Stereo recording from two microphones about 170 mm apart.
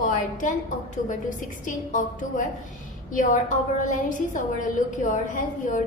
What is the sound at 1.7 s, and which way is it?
A woman's voice, 50° left (ahead or behind).